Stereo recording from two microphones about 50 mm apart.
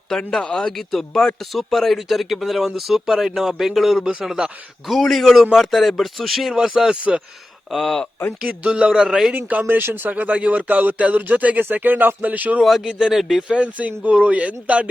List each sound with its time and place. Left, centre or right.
0.1 s speech: centre
6.7 s speech: centre
6.9 s speech: right
7.7 s speech: centre
8.4 s speech: right
9.3 s speech: right
9.7 s speech: right
10.1 s speech: right
12.8 s speech: centre
13.5 s speech: right